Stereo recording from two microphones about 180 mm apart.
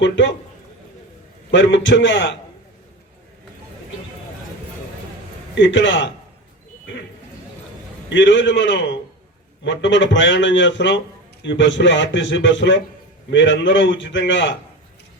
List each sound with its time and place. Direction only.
0.0 s a sound: 90° left
1.5 s a man's voice: 90° left
5.5 s a man's voice: 90° left
8.1 s a man's voice: 85° left